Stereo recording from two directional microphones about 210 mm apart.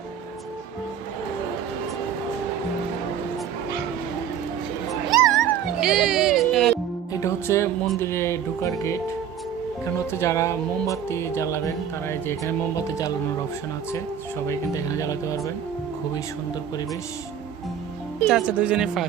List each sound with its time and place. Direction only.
5.2 s music: centre (ahead or behind)
7.1 s music: 15° left (ahead or behind)
7.9 s speech: 10° left (ahead or behind)
18.3 s speech: 5° right (ahead or behind)